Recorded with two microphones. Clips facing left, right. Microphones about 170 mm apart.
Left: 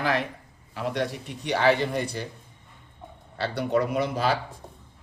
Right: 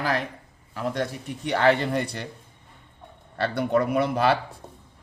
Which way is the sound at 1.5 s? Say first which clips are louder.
Right 1 dB; 60° right (ahead or behind).